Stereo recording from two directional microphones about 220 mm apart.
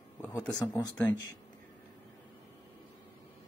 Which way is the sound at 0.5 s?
15° left (ahead or behind).